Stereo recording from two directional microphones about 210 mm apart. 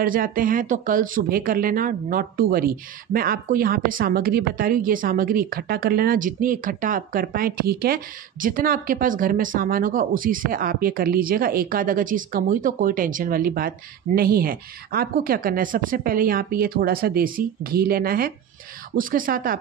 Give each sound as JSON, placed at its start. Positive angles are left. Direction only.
{"t": 0.0, "sound": "speech", "side_deg": -40}